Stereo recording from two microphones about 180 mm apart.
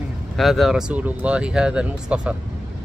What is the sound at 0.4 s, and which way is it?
Speech, centre (ahead or behind).